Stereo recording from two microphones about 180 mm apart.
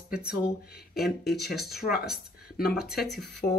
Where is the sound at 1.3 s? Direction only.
Centre (ahead or behind).